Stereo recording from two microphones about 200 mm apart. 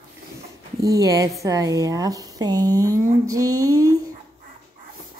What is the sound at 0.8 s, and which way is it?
Speech, 15° right (ahead or behind).